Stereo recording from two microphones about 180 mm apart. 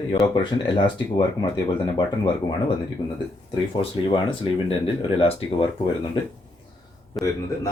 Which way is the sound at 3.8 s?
30° left (ahead or behind).